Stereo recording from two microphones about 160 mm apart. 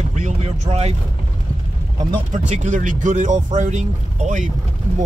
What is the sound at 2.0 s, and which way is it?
Speech, 50° right (ahead or behind).